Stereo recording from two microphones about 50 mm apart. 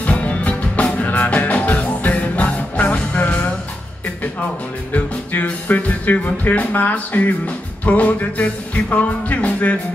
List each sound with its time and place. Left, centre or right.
0.0 s music: left
5.3 s speech: left